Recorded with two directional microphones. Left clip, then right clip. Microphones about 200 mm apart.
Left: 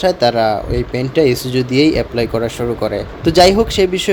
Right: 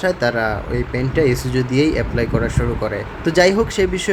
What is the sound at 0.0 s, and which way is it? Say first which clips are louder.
Speech: left 5 dB; 15° left (ahead or behind).